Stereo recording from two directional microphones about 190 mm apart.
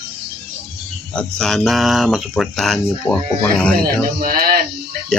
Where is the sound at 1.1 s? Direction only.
5° left (ahead or behind).